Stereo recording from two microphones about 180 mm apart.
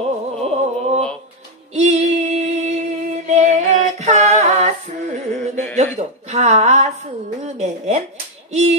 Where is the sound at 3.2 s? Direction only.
40° right (ahead or behind).